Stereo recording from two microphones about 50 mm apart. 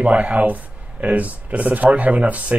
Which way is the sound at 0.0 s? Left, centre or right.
Right.